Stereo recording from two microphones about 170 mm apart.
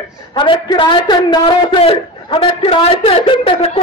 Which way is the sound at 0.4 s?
25° left (ahead or behind).